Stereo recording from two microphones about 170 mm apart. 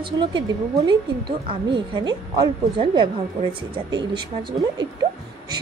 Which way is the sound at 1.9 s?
25° right (ahead or behind).